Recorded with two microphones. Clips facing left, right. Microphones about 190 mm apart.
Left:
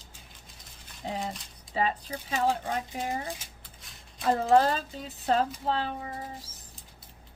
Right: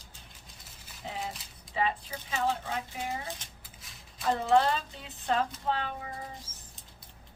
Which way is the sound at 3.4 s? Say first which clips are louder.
Left 1 dB; centre (ahead or behind).